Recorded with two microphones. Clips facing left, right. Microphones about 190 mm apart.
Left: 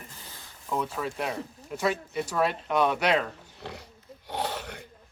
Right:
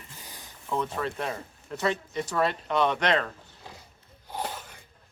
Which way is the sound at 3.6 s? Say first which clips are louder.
Left 8 dB; 70° left (ahead or behind).